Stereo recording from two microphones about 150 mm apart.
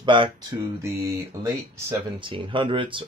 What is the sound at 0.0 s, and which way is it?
Speech, 35° right (ahead or behind).